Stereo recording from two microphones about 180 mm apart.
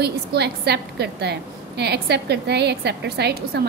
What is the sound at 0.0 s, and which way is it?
A woman's voice, 65° right (ahead or behind).